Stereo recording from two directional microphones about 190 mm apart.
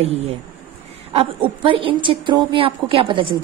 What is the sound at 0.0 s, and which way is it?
A woman's voice, 35° right (ahead or behind).